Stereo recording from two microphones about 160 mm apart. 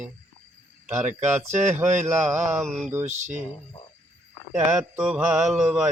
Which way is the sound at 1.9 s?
50° right (ahead or behind).